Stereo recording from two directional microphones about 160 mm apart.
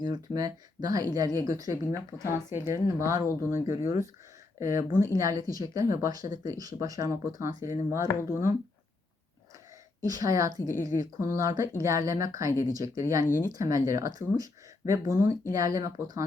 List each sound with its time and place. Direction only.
0.0 s speech: 25° right (ahead or behind)
10.0 s speech: 20° right (ahead or behind)
13.2 s speech: 15° left (ahead or behind)
13.5 s speech: 20° right (ahead or behind)